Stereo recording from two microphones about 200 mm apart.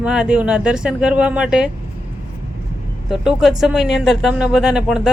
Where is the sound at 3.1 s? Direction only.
Centre (ahead or behind).